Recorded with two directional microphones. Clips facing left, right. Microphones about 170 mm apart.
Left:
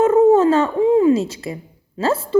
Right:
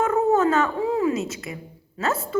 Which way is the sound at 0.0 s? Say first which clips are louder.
Left 8 dB; 25° left (ahead or behind).